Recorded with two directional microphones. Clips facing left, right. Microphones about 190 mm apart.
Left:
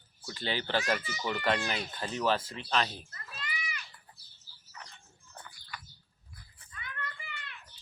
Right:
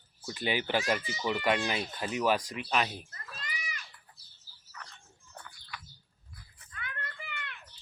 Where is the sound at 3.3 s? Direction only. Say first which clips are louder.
Left 2 dB; 45° right (ahead or behind).